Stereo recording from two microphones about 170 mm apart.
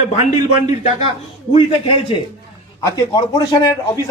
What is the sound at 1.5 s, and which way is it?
A man's voice, 30° left (ahead or behind).